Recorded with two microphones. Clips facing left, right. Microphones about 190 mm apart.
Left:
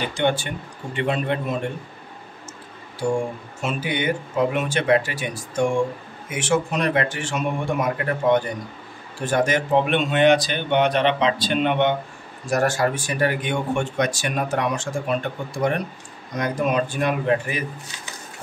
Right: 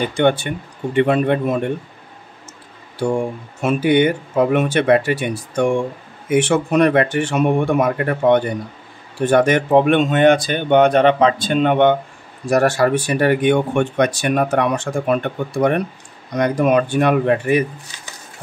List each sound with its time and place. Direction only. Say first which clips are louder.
0.0 s speech: right 6 dB; 55° right (ahead or behind)
3.6 s speech: right 9 dB; 60° right (ahead or behind)
12.4 s speech: right 6 dB; 60° right (ahead or behind)